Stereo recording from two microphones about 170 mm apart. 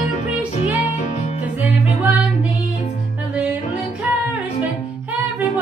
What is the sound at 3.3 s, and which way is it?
Music, 10° right (ahead or behind).